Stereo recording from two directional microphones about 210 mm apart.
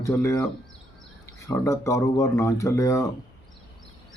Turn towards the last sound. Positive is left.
turn(degrees=15)  # may be behind; listen again after turning